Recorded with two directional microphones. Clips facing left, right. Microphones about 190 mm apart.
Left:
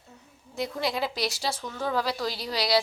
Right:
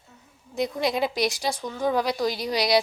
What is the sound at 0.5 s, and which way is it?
A woman's voice, 20° right (ahead or behind).